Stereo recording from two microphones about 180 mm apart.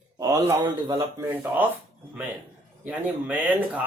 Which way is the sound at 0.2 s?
20° right (ahead or behind).